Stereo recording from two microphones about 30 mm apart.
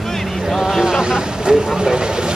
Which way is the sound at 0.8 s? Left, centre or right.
Right.